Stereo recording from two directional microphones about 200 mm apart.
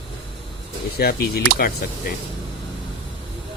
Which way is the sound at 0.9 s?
50° left (ahead or behind).